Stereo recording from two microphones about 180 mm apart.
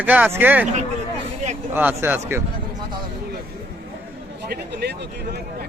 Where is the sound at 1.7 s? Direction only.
10° right (ahead or behind).